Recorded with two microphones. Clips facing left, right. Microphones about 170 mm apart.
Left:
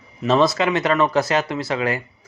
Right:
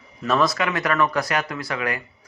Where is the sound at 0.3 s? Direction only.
25° left (ahead or behind).